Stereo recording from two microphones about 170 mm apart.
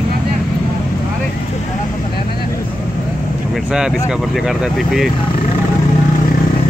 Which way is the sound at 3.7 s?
5° right (ahead or behind).